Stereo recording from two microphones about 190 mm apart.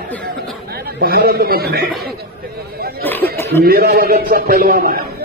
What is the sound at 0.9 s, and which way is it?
Speech, 55° right (ahead or behind).